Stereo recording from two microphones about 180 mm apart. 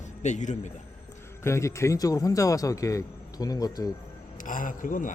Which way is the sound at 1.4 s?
15° left (ahead or behind).